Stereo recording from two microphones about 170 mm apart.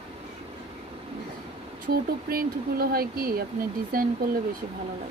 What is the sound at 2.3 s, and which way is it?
Speech, 60° right (ahead or behind).